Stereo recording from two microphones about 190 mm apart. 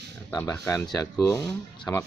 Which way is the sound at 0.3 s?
20° left (ahead or behind).